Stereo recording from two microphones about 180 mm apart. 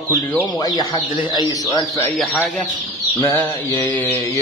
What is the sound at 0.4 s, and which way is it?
Speech, 20° left (ahead or behind).